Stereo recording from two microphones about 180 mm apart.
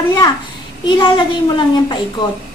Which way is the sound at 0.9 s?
25° left (ahead or behind).